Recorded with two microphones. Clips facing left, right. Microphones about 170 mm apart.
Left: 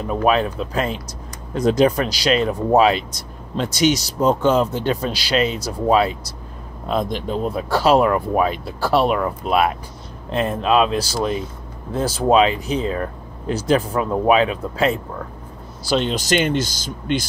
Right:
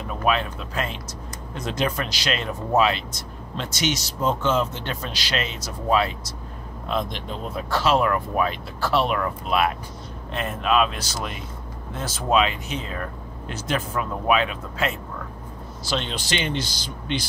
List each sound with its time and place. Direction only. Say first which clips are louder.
0.1 s speech: left 6 dB; 40° left (ahead or behind)
6.9 s speech: left 6 dB; 40° left (ahead or behind)